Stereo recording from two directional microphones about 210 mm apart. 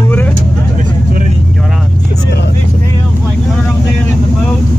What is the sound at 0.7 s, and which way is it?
Vehicle, 35° right (ahead or behind).